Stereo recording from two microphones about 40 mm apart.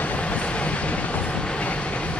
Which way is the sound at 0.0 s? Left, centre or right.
Left.